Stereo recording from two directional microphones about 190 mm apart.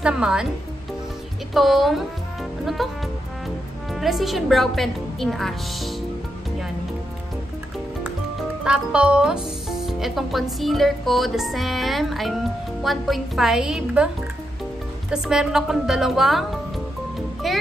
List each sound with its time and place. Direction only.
0.0 s a woman's voice: 5° right (ahead or behind)
1.5 s a woman's voice: centre (ahead or behind)
3.9 s a woman's voice: centre (ahead or behind)
8.0 s a woman's voice: 5° right (ahead or behind)
15.0 s a woman's voice: 5° right (ahead or behind)